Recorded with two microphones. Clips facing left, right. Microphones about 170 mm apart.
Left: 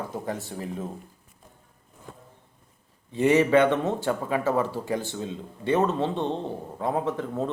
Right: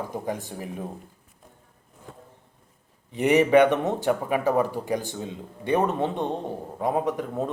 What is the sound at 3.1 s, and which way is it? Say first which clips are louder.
Speech: right 1 dB; 15° right (ahead or behind).